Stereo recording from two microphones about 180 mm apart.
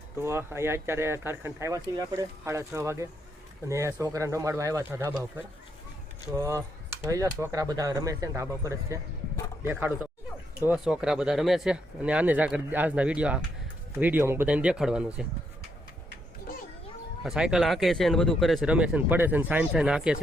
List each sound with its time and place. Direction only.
0.2 s speech: 15° right (ahead or behind)
6.3 s speech: 15° right (ahead or behind)
17.2 s speech: 5° right (ahead or behind)